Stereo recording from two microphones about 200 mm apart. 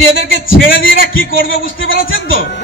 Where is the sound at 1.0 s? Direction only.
45° left (ahead or behind).